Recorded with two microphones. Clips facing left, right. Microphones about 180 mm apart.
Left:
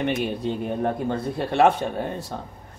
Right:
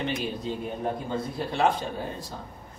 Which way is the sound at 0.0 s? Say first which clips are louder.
Left 5 dB; 65° left (ahead or behind).